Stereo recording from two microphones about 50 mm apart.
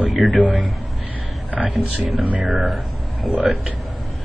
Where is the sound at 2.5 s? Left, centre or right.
Centre.